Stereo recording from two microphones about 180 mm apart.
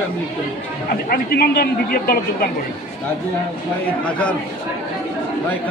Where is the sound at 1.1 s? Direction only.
60° left (ahead or behind).